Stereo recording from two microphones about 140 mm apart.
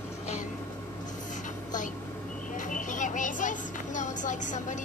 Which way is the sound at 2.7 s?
65° left (ahead or behind).